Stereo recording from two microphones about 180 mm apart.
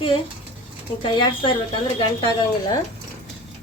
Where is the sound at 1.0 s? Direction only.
25° left (ahead or behind).